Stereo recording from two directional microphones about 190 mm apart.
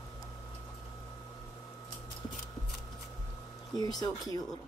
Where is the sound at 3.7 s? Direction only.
20° left (ahead or behind).